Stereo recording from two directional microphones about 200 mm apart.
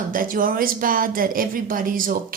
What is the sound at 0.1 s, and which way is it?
Speech, 45° right (ahead or behind).